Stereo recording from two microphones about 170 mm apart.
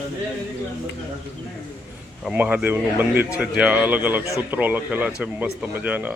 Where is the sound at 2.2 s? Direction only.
5° right (ahead or behind).